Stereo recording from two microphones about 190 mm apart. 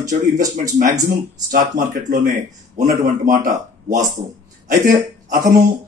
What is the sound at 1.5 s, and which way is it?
Speech, 50° right (ahead or behind).